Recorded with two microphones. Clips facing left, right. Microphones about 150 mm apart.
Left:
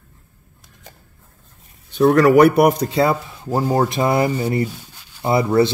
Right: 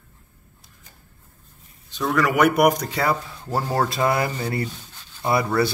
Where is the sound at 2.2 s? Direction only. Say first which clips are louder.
Left 3 dB; 35° left (ahead or behind); by 5.3 s 10° left (ahead or behind).